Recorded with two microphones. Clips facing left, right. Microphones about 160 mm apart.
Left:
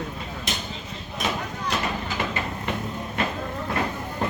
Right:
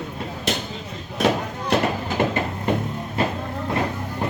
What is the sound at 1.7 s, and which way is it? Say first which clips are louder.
Vehicle: right 8 dB; 50° right (ahead or behind).